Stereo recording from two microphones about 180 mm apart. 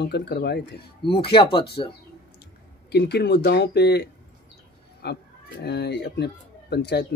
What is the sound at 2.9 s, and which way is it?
Speech, 65° left (ahead or behind).